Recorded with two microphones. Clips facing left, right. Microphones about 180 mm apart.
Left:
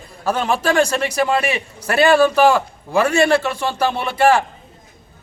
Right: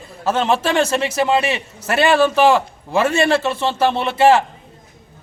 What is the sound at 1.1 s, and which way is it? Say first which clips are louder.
Speech: right 1 dB; 25° right (ahead or behind).